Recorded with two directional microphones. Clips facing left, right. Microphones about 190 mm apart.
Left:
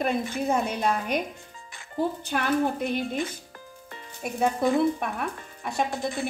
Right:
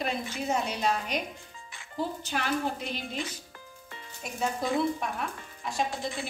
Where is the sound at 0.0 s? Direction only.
55° left (ahead or behind).